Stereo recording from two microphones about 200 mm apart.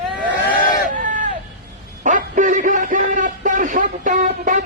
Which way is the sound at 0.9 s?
40° right (ahead or behind).